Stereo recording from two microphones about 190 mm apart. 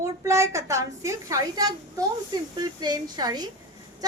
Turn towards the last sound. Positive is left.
turn(degrees=-20)  # may be behind; listen again after turning